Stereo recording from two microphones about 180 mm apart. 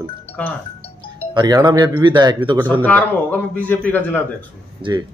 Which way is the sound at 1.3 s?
25° right (ahead or behind).